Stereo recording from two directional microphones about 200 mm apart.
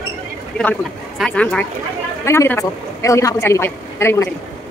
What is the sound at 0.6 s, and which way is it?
A woman's voice, 5° left (ahead or behind).